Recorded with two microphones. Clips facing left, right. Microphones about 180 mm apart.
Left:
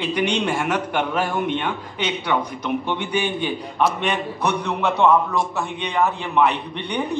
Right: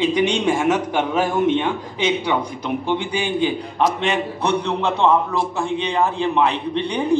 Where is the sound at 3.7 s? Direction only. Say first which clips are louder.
Right 2 dB; 25° right (ahead or behind).